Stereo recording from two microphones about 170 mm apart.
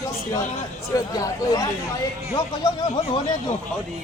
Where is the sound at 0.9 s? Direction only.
20° left (ahead or behind).